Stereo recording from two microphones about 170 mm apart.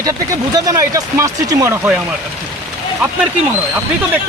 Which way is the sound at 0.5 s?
20° right (ahead or behind).